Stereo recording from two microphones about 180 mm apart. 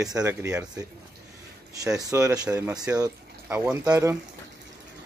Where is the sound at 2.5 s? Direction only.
5° right (ahead or behind).